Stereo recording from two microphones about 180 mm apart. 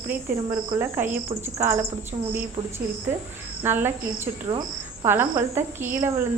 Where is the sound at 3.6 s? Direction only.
10° right (ahead or behind).